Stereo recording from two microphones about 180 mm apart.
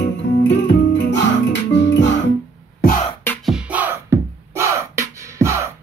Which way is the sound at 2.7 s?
55° left (ahead or behind).